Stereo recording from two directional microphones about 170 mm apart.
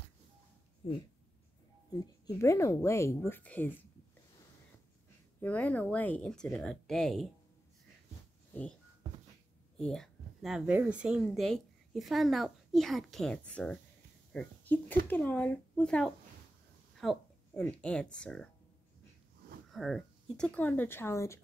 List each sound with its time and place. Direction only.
0.8 s speech: 35° left (ahead or behind)
1.9 s speech: 20° left (ahead or behind)
5.4 s speech: 10° left (ahead or behind)
9.8 s a woman's voice: 5° left (ahead or behind)
19.7 s speech: centre (ahead or behind); by 21.4 s 15° left (ahead or behind)